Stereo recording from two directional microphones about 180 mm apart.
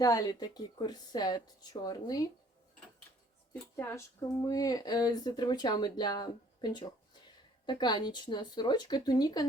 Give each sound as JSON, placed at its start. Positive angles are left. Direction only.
{"t": 0.0, "sound": "speech", "side_deg": 20}
{"t": 3.5, "sound": "speech", "side_deg": 15}